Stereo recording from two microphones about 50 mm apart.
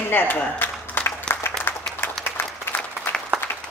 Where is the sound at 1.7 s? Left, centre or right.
Left.